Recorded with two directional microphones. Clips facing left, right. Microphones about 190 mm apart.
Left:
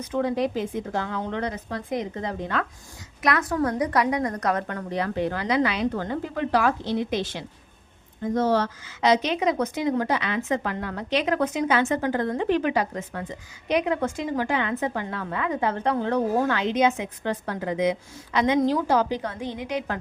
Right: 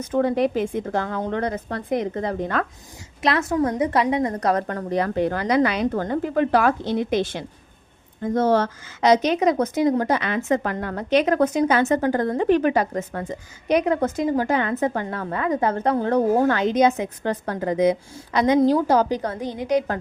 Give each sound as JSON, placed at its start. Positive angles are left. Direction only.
{"t": 0.0, "sound": "a woman's voice", "side_deg": -50}
{"t": 3.2, "sound": "a woman's voice", "side_deg": -25}